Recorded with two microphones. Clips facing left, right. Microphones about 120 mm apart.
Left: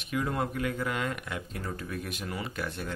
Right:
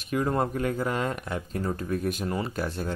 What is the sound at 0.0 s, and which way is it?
Speech, 40° right (ahead or behind).